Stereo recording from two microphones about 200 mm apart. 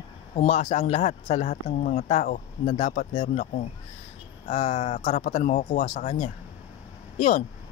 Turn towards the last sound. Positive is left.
turn(degrees=35)  # may be behind; listen again after turning